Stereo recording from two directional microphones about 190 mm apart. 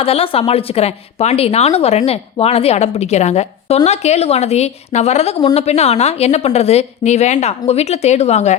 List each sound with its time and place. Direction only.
0.0 s a woman's voice: 30° left (ahead or behind)